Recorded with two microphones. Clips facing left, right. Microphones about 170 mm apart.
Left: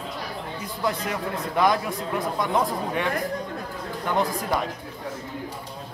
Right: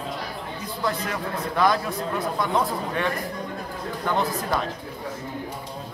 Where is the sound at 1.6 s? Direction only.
20° left (ahead or behind).